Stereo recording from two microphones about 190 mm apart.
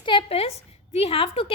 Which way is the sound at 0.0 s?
25° left (ahead or behind).